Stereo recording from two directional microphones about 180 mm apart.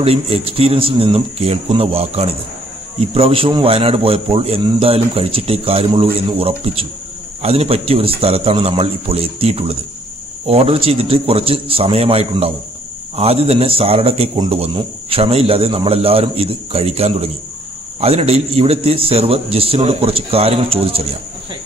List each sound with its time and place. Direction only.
0.0 s a man's voice: 35° right (ahead or behind)